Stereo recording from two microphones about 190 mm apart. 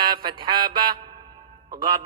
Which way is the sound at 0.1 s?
25° right (ahead or behind).